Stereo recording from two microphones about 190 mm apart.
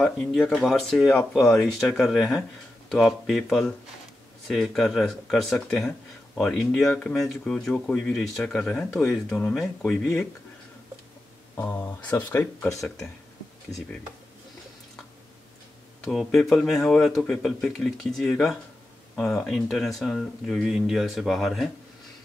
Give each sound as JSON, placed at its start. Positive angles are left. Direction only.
{"t": 0.0, "sound": "speech", "side_deg": 0}
{"t": 11.5, "sound": "speech", "side_deg": 15}
{"t": 16.1, "sound": "speech", "side_deg": 0}